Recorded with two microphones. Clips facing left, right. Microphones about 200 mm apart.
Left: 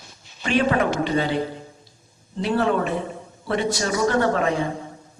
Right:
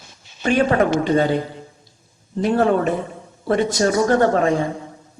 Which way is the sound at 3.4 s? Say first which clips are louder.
Right 6 dB; 45° right (ahead or behind).